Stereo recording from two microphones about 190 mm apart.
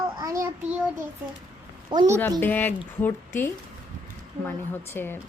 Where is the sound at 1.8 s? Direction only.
20° right (ahead or behind).